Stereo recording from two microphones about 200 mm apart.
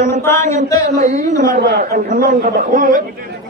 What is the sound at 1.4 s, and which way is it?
A man's voice, 55° right (ahead or behind).